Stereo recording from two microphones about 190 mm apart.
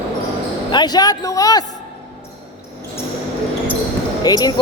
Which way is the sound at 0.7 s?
20° left (ahead or behind).